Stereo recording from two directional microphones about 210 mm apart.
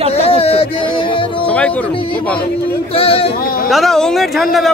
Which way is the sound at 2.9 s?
25° left (ahead or behind).